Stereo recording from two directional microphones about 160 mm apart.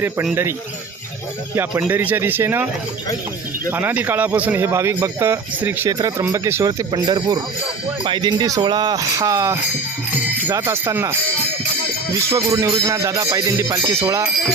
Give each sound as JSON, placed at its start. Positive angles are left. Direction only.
{"t": 1.8, "sound": "a man's voice", "side_deg": -10}
{"t": 3.7, "sound": "a man's voice", "side_deg": -10}
{"t": 5.9, "sound": "music", "side_deg": -20}
{"t": 10.5, "sound": "a man's voice", "side_deg": -20}
{"t": 12.3, "sound": "music", "side_deg": -15}